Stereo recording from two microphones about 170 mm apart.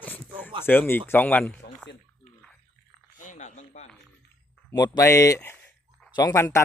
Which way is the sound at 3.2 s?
45° left (ahead or behind).